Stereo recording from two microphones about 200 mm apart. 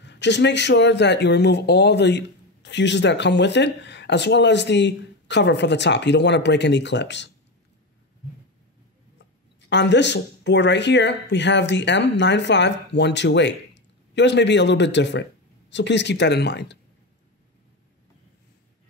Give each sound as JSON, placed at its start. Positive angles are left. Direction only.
{"t": 0.0, "sound": "speech", "side_deg": 60}
{"t": 9.7, "sound": "speech", "side_deg": 60}